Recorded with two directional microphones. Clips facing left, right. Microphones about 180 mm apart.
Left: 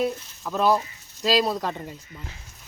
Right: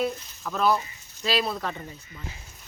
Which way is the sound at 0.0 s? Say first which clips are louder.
Left 2 dB; 10° left (ahead or behind).